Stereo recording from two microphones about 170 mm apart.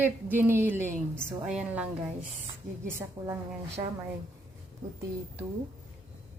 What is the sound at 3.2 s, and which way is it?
Female singing, 20° right (ahead or behind).